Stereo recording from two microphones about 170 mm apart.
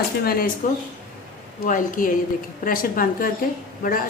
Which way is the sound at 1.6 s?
50° left (ahead or behind).